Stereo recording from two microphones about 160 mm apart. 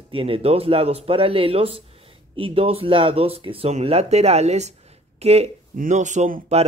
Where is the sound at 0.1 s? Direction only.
35° right (ahead or behind); by 6.4 s 55° right (ahead or behind).